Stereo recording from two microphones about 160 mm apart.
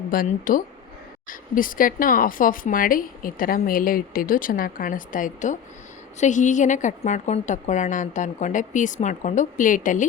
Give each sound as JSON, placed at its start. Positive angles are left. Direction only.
{"t": 0.1, "sound": "a woman's voice", "side_deg": 60}